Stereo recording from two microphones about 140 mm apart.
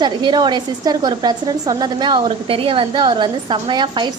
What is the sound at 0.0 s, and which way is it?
A woman's voice, 30° right (ahead or behind).